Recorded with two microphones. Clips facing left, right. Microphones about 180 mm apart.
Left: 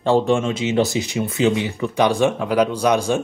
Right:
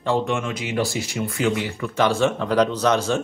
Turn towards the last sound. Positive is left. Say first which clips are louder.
# left 2 dB
turn(degrees=15)  # may be behind; listen again after turning